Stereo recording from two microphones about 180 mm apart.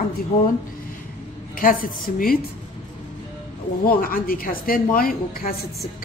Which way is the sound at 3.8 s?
50° left (ahead or behind).